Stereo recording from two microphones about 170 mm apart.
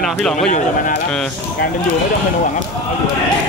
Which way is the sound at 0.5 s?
50° left (ahead or behind).